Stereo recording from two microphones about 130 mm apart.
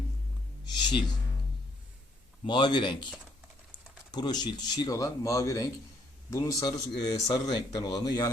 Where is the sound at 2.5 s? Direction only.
35° left (ahead or behind).